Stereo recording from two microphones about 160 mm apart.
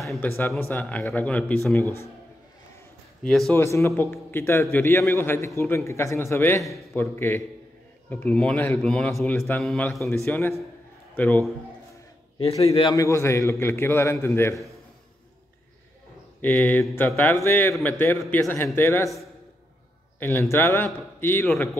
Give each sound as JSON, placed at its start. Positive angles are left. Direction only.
{"t": 0.2, "sound": "a man's voice", "side_deg": 10}
{"t": 3.3, "sound": "a man's voice", "side_deg": 5}
{"t": 3.5, "sound": "a man's voice", "side_deg": 20}
{"t": 6.6, "sound": "a man's voice", "side_deg": 0}
{"t": 7.0, "sound": "a man's voice", "side_deg": 15}
{"t": 12.6, "sound": "a man's voice", "side_deg": 40}
{"t": 12.9, "sound": "a man's voice", "side_deg": 20}
{"t": 16.3, "sound": "a man's voice", "side_deg": 10}
{"t": 20.2, "sound": "a man's voice", "side_deg": 15}